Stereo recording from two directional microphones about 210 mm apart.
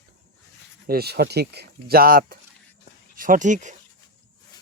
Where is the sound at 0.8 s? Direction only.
45° right (ahead or behind).